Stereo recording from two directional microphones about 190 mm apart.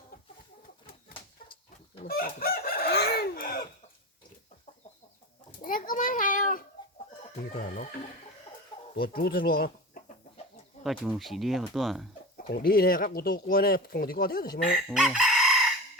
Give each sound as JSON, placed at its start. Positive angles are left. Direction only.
{"t": 2.0, "sound": "chicken", "side_deg": 50}
{"t": 5.6, "sound": "a sound", "side_deg": 45}
{"t": 7.5, "sound": "speech", "side_deg": 50}
{"t": 9.0, "sound": "speech", "side_deg": 50}
{"t": 10.8, "sound": "speech", "side_deg": 0}
{"t": 12.4, "sound": "speech", "side_deg": 50}
{"t": 14.8, "sound": "chicken", "side_deg": 0}